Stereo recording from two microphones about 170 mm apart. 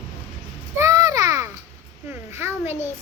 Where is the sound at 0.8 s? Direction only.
20° right (ahead or behind).